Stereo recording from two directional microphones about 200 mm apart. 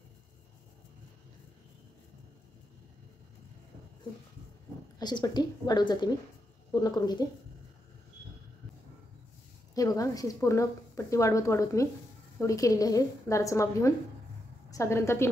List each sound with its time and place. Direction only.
4.9 s a woman's voice: 20° left (ahead or behind)
9.8 s a woman's voice: 15° left (ahead or behind)